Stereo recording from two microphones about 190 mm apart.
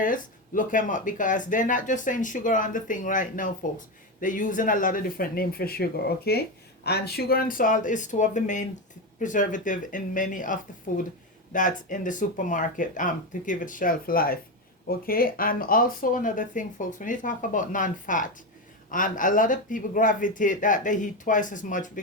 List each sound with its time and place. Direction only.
0.0 s speech: 45° left (ahead or behind)